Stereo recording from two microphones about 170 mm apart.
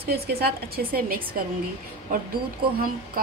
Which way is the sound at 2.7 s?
60° right (ahead or behind).